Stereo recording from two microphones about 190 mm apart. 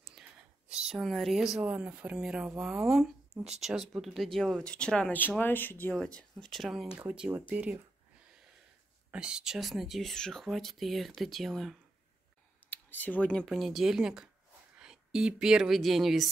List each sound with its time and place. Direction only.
0.0 s speech: 5° right (ahead or behind)
9.1 s speech: 5° right (ahead or behind)